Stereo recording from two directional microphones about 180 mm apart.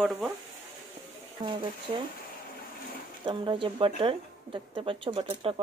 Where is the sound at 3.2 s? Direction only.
25° right (ahead or behind).